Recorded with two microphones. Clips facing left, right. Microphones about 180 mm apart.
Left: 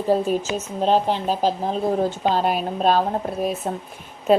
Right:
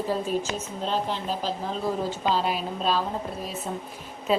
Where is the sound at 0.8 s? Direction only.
70° left (ahead or behind).